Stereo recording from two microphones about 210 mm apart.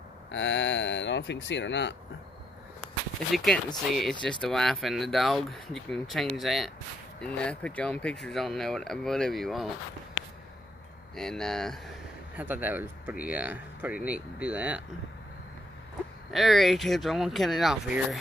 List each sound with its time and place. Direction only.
0.3 s speech: 60° left (ahead or behind)
3.3 s speech: centre (ahead or behind)
11.1 s speech: centre (ahead or behind)
12.4 s speech: 10° right (ahead or behind)
16.3 s speech: centre (ahead or behind)